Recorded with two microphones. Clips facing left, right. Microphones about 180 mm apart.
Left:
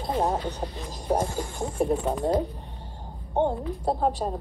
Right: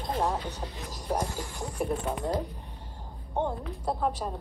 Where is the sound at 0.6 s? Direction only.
25° left (ahead or behind).